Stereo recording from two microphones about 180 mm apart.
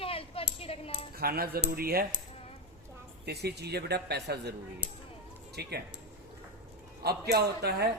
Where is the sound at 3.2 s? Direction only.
65° right (ahead or behind).